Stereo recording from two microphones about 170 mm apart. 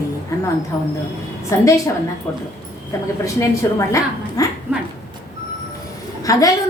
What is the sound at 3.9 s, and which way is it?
Speech, 20° left (ahead or behind).